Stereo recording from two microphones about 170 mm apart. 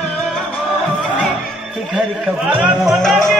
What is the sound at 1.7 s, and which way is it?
A man's voice, 5° right (ahead or behind).